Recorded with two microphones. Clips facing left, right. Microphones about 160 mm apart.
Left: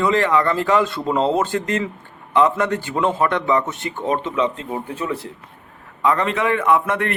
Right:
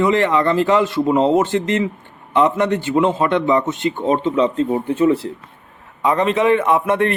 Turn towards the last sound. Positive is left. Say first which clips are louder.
# right 2 dB
turn(degrees=-20)  # may be behind; listen again after turning